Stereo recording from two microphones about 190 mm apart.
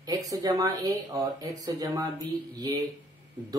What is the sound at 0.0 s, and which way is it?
Speech, 20° right (ahead or behind).